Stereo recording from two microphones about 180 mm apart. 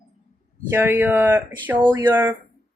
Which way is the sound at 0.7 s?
10° right (ahead or behind).